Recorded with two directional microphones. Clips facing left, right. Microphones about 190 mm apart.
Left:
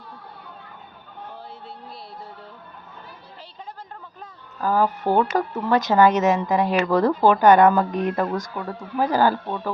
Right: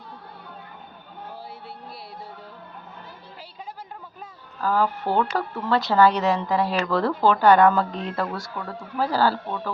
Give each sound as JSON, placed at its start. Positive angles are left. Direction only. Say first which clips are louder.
{"t": 4.6, "sound": "speech", "louder": "left 2 dB", "side_deg": 15}